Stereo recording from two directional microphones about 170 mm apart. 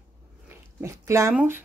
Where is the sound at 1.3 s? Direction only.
5° right (ahead or behind).